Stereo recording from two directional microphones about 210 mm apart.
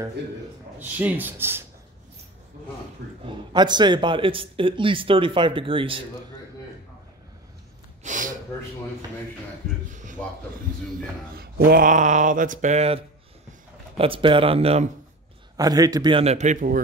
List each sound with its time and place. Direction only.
0.7 s speech: 10° right (ahead or behind)
3.3 s speech: 20° right (ahead or behind)
8.0 s speech: 35° right (ahead or behind)
11.3 s mantra: 45° right (ahead or behind); by 13.0 s 30° right (ahead or behind)
13.9 s speech: 25° right (ahead or behind)
15.5 s speech: 15° right (ahead or behind); by 16.8 s 35° right (ahead or behind)